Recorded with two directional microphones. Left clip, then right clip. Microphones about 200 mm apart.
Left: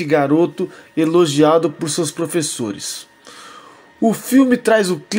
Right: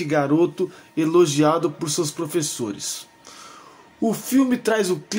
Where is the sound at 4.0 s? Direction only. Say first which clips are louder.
Left 6 dB; 15° left (ahead or behind).